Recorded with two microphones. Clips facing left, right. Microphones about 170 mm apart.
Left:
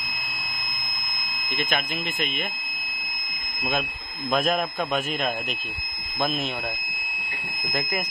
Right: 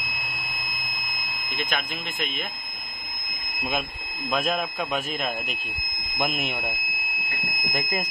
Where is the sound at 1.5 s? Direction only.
Centre (ahead or behind).